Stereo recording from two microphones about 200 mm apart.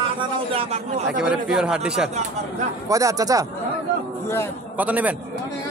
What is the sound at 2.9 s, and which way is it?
Speech, 15° right (ahead or behind).